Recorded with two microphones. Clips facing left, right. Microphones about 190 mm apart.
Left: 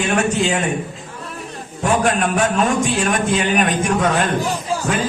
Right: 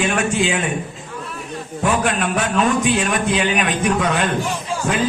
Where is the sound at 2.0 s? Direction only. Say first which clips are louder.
Left 3 dB; 45° left (ahead or behind).